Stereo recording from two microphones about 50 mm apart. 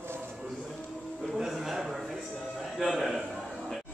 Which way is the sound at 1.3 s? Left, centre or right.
Centre.